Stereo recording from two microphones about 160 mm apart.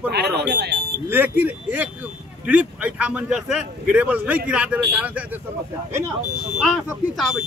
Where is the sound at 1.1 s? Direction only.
10° right (ahead or behind).